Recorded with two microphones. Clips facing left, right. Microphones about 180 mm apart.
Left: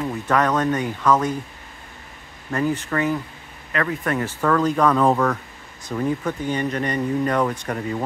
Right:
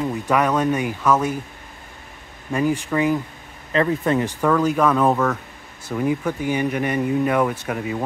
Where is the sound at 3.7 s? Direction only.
25° right (ahead or behind).